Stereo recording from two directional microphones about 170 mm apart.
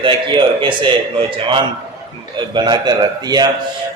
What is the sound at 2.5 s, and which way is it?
Speech, 25° right (ahead or behind).